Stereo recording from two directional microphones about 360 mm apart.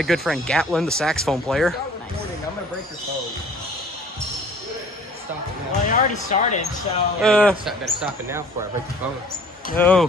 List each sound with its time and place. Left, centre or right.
0.0 s speech: centre
5.7 s speech: centre
7.2 s speech: centre
9.8 s speech: centre